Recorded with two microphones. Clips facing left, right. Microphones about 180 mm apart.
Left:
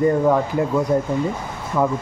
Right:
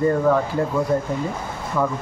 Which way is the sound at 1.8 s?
15° left (ahead or behind).